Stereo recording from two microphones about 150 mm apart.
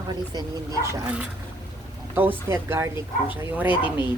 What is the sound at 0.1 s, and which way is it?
Speech, 25° right (ahead or behind).